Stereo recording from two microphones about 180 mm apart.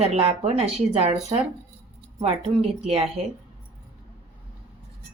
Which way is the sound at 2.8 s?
35° right (ahead or behind).